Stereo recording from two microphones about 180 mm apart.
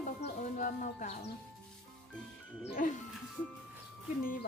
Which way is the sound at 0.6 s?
40° left (ahead or behind).